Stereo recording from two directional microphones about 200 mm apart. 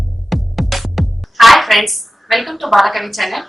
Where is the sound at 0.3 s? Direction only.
Centre (ahead or behind).